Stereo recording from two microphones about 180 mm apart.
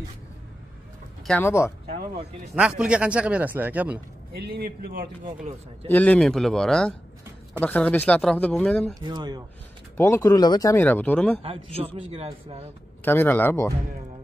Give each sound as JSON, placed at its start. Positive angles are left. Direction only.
{"t": 1.2, "sound": "speech", "side_deg": 10}
{"t": 2.5, "sound": "speech", "side_deg": -5}
{"t": 4.3, "sound": "a man's voice", "side_deg": -60}
{"t": 5.9, "sound": "speech", "side_deg": 10}
{"t": 9.0, "sound": "speech", "side_deg": -25}
{"t": 9.9, "sound": "speech", "side_deg": 15}
{"t": 11.4, "sound": "a man's voice", "side_deg": -30}
{"t": 13.0, "sound": "speech", "side_deg": 10}